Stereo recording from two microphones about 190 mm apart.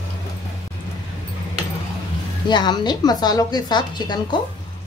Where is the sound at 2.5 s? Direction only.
25° left (ahead or behind).